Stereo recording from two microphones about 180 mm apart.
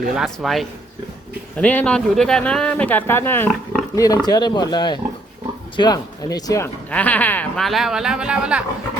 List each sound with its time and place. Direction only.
0.2 s speech: centre (ahead or behind)
3.5 s roaring cats: 5° left (ahead or behind)
3.9 s speech: 20° left (ahead or behind); by 8.6 s 5° right (ahead or behind)